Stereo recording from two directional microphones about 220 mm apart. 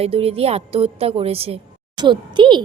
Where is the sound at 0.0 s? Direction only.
25° right (ahead or behind).